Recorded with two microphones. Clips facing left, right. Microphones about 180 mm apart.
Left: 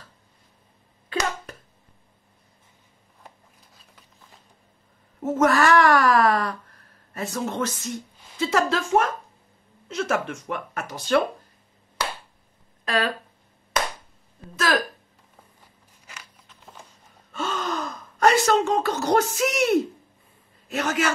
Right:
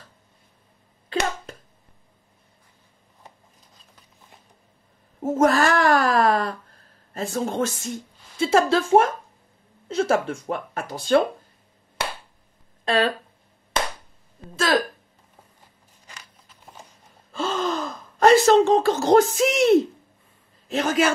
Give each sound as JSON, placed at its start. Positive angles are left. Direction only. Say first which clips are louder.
{"t": 1.1, "sound": "a sound", "louder": "right 2 dB", "side_deg": -25}
{"t": 5.2, "sound": "speech", "louder": "right 1 dB", "side_deg": -30}
{"t": 12.8, "sound": "speech", "louder": "right 4 dB", "side_deg": -25}
{"t": 14.5, "sound": "speech", "louder": "right 2 dB", "side_deg": -30}
{"t": 17.3, "sound": "gasp", "louder": "right 4 dB", "side_deg": -30}
{"t": 18.2, "sound": "a sound", "louder": "right 5 dB", "side_deg": -30}
{"t": 18.8, "sound": "speech", "louder": "right 5 dB", "side_deg": -25}